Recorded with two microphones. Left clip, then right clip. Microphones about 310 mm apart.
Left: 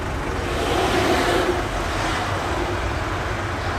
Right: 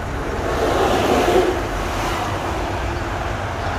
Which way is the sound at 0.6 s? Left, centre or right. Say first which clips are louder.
Right 2 dB; right.